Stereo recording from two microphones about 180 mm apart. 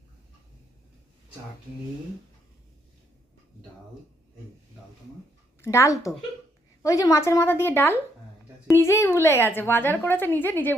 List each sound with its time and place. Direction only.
5.6 s a woman's voice: 15° left (ahead or behind)